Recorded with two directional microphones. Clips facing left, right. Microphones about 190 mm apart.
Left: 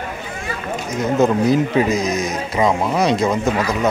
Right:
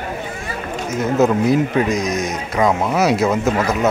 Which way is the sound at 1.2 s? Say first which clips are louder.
Even; centre (ahead or behind).